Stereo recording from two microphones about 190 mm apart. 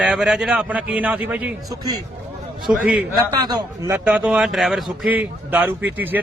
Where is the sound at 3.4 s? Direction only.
20° right (ahead or behind).